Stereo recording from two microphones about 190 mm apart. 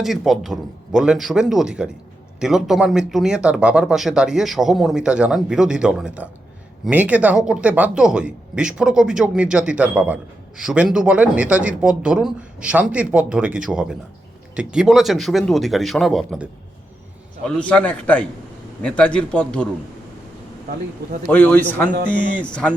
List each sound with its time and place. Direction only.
0.0 s a man's voice: centre (ahead or behind)
21.2 s a man's voice: 10° left (ahead or behind)
22.0 s speech: 45° left (ahead or behind)
22.4 s a man's voice: 5° left (ahead or behind)